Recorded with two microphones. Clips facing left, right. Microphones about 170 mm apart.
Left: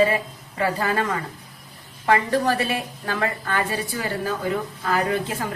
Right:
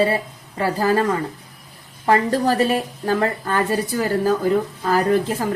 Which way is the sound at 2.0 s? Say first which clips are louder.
Right 3 dB; 40° right (ahead or behind).